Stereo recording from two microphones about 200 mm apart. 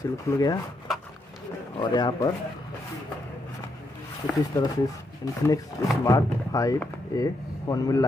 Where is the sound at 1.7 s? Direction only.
20° left (ahead or behind).